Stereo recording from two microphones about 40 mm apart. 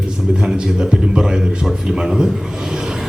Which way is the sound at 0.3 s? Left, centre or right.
Centre.